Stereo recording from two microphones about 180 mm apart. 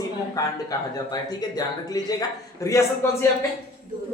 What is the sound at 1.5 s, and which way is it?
A man's voice, 20° left (ahead or behind).